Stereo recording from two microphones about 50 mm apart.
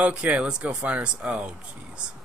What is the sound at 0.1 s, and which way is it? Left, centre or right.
Speech, right.